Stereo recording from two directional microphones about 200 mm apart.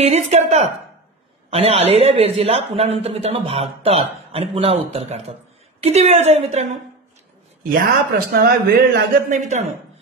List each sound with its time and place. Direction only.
0.0 s speech: 35° right (ahead or behind)
7.7 s a man's voice: 45° right (ahead or behind)